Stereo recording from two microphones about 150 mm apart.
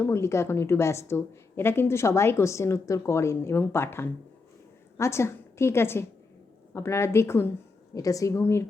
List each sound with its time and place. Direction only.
0.0 s a woman's voice: 20° left (ahead or behind)